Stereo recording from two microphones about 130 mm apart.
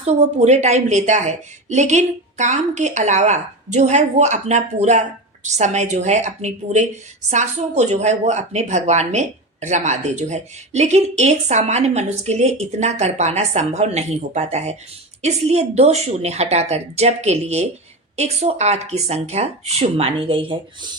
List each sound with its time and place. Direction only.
0.0 s speech: 55° right (ahead or behind); by 20.9 s 40° right (ahead or behind)